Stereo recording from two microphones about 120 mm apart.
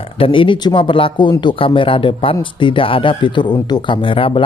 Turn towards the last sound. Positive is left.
turn(degrees=45)  # may be behind; listen again after turning